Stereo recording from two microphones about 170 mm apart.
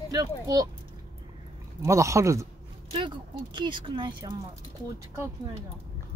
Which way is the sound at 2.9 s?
30° right (ahead or behind).